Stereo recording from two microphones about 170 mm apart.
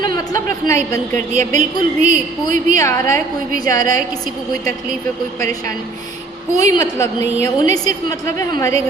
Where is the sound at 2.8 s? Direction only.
20° left (ahead or behind).